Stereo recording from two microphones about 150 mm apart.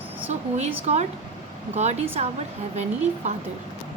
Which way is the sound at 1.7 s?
45° right (ahead or behind).